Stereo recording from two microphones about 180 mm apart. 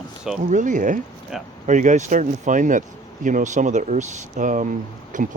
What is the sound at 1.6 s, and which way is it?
Speech, 45° right (ahead or behind).